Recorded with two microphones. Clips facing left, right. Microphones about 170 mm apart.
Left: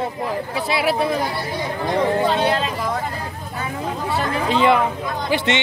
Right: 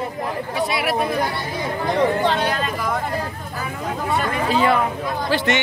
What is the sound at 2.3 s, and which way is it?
Speech, 30° left (ahead or behind).